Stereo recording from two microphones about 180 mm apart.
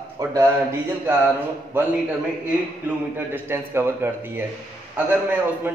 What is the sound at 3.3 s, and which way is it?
A man's voice, 15° right (ahead or behind).